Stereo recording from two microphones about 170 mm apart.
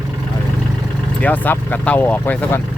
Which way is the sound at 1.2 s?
10° left (ahead or behind).